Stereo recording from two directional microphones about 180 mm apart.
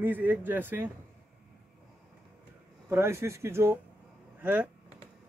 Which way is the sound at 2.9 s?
15° right (ahead or behind).